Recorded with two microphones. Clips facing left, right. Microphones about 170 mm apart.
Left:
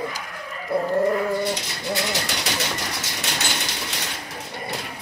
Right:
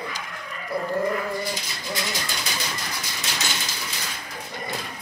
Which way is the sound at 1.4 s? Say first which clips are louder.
Left 5 dB; 70° left (ahead or behind).